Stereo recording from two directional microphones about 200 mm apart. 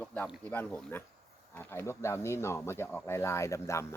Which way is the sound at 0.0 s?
5° left (ahead or behind).